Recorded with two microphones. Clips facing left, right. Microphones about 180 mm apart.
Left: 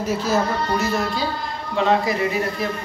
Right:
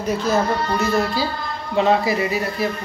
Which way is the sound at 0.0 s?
5° left (ahead or behind).